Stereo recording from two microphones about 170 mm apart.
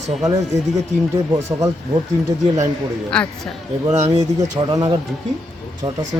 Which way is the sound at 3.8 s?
40° right (ahead or behind).